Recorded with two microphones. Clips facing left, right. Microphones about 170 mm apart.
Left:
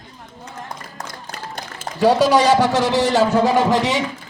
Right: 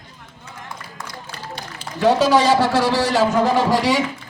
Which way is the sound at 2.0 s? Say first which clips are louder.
Left 1 dB; 15° left (ahead or behind).